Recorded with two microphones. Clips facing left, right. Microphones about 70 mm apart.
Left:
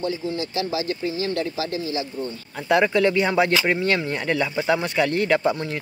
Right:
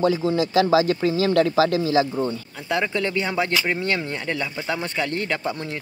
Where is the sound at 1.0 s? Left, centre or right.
Right.